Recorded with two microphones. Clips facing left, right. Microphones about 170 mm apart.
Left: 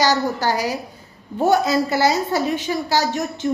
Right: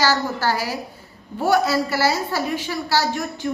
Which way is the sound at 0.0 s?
20° left (ahead or behind).